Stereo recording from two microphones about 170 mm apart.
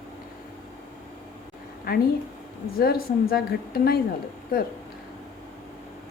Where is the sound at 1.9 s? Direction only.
60° left (ahead or behind).